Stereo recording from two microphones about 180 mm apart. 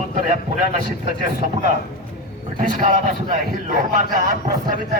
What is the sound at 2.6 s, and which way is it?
A man's voice, 50° right (ahead or behind).